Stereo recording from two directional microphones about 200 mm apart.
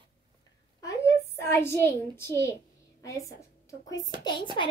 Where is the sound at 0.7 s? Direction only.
15° left (ahead or behind).